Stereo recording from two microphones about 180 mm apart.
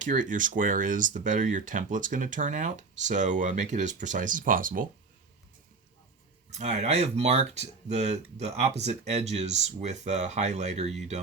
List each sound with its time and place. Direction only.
0.0 s speech: 45° right (ahead or behind)
6.5 s speech: 40° right (ahead or behind)